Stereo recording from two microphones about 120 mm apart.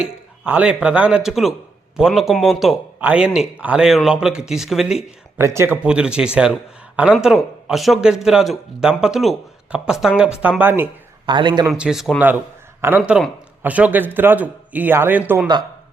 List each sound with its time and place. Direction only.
0.0 s a man's voice: 10° right (ahead or behind)
5.4 s a man's voice: 20° right (ahead or behind)
11.3 s a man's voice: 40° right (ahead or behind)
11.6 s a man's voice: 5° right (ahead or behind)
12.8 s a man's voice: 20° right (ahead or behind)
13.6 s a man's voice: 10° right (ahead or behind)